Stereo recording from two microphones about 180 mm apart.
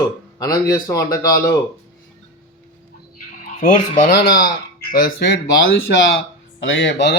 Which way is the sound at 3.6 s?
45° left (ahead or behind).